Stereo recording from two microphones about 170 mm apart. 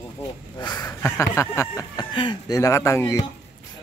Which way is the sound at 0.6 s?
25° left (ahead or behind).